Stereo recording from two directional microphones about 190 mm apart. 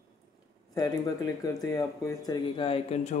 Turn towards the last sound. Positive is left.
turn(degrees=30)  # may be behind; listen again after turning